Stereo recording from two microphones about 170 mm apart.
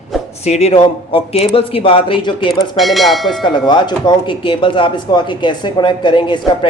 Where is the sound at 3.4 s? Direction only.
25° left (ahead or behind).